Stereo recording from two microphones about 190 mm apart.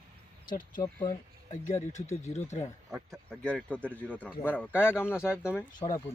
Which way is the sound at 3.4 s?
5° left (ahead or behind).